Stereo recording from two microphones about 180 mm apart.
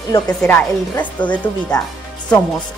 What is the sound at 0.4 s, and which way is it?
Speech, 10° left (ahead or behind).